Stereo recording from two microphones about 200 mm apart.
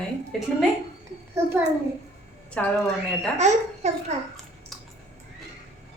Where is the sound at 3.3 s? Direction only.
35° right (ahead or behind).